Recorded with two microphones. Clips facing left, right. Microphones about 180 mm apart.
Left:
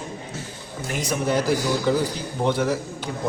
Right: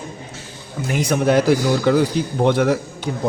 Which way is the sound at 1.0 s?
75° right (ahead or behind).